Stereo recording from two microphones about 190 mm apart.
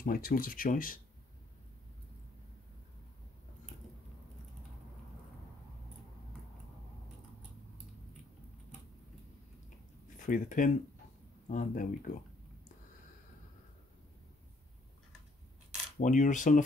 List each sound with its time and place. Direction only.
0.0 s speech: 50° left (ahead or behind)
10.0 s speech: 40° left (ahead or behind)
16.0 s speech: 40° left (ahead or behind)